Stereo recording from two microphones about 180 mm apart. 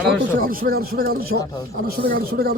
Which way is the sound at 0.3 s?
55° right (ahead or behind).